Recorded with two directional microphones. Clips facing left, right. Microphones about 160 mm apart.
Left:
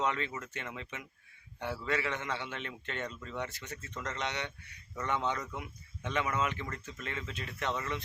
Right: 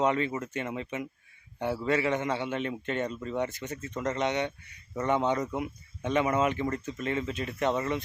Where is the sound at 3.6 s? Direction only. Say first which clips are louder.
Right 8 dB; 30° right (ahead or behind).